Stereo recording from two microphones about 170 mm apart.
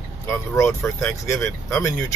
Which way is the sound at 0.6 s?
15° left (ahead or behind).